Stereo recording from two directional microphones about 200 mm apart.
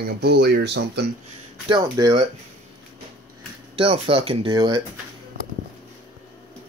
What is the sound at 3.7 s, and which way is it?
Speech, 30° right (ahead or behind).